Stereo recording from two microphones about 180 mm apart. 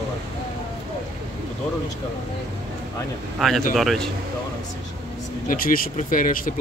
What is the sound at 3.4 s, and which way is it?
Speech, centre (ahead or behind).